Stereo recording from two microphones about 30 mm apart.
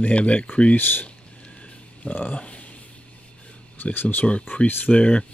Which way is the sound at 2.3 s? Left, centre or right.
Left.